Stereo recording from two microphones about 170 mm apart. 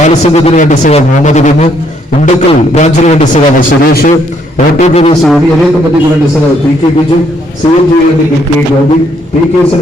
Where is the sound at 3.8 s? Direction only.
65° left (ahead or behind).